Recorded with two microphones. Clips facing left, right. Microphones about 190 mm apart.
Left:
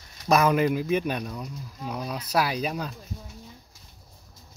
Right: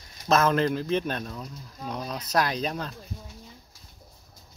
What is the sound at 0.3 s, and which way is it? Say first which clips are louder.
Speech: left 1 dB; 10° left (ahead or behind).